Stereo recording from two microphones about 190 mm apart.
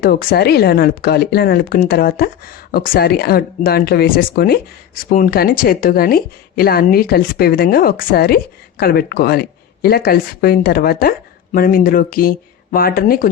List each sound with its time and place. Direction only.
0.0 s speech: 50° left (ahead or behind)